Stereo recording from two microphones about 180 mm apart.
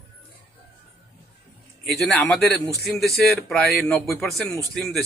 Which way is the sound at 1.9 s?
5° left (ahead or behind).